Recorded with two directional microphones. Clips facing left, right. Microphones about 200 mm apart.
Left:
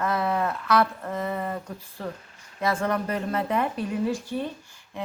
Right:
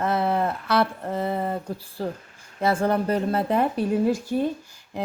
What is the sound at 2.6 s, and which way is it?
Speech, 30° right (ahead or behind).